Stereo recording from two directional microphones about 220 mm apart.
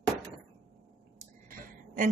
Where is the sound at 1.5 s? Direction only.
40° right (ahead or behind).